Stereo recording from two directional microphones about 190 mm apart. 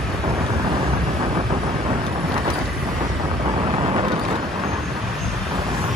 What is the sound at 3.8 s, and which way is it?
Vehicle, 25° right (ahead or behind).